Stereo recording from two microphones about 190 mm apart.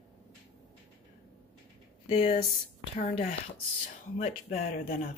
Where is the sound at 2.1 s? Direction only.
30° left (ahead or behind).